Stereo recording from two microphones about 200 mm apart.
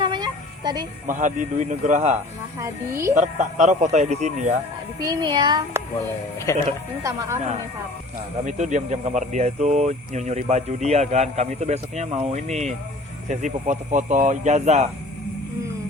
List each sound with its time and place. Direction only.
0.0 s music: 20° right (ahead or behind)
1.0 s speech: 40° right (ahead or behind)
2.1 s speech: 15° right (ahead or behind)
3.2 s speech: 35° right (ahead or behind)
4.9 s speech: 20° right (ahead or behind)
7.0 s speech: 15° right (ahead or behind)
8.4 s speech: 35° right (ahead or behind)